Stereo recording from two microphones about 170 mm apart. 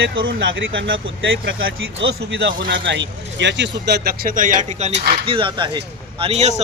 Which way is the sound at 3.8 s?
75° right (ahead or behind).